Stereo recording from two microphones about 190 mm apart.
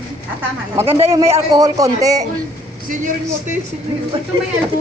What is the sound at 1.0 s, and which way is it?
A man's voice, 15° right (ahead or behind).